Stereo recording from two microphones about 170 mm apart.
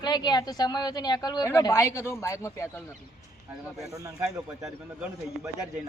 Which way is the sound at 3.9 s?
20° right (ahead or behind).